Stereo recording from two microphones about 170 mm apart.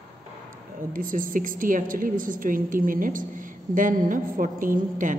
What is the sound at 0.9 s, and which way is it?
A woman's voice, 55° right (ahead or behind).